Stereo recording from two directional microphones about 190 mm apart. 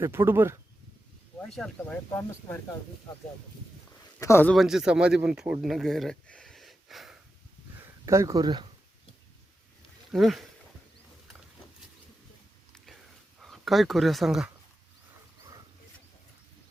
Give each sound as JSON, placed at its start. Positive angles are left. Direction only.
{"t": 0.0, "sound": "speech", "side_deg": -10}
{"t": 1.5, "sound": "speech", "side_deg": 5}
{"t": 4.2, "sound": "speech", "side_deg": 15}
{"t": 4.5, "sound": "speech", "side_deg": 0}
{"t": 8.0, "sound": "speech", "side_deg": -15}
{"t": 10.1, "sound": "speech", "side_deg": 0}
{"t": 12.7, "sound": "a sound", "side_deg": 0}
{"t": 13.4, "sound": "speech", "side_deg": 0}